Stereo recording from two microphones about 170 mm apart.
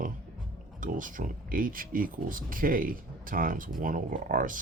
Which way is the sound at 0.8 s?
50° right (ahead or behind).